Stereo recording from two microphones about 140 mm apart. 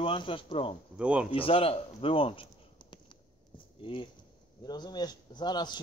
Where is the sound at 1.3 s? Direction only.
40° left (ahead or behind).